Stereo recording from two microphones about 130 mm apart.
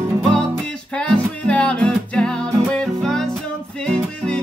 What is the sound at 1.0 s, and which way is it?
Music, 10° left (ahead or behind).